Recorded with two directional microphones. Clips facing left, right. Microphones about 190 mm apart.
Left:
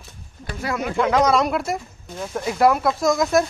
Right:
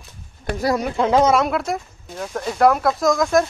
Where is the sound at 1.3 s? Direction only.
Centre (ahead or behind).